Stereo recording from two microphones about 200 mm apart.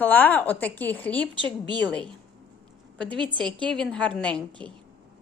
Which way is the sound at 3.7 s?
5° left (ahead or behind).